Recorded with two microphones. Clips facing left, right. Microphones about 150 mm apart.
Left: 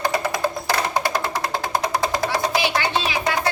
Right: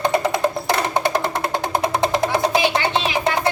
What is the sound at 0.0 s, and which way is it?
Music, 25° right (ahead or behind).